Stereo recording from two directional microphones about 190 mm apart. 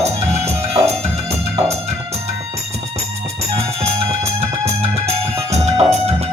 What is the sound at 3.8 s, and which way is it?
Music, 30° right (ahead or behind).